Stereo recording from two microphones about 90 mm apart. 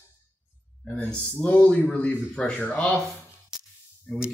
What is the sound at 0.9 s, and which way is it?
Speech, 15° left (ahead or behind).